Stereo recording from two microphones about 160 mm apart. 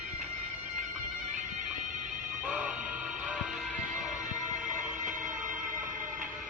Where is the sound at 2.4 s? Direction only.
5° right (ahead or behind).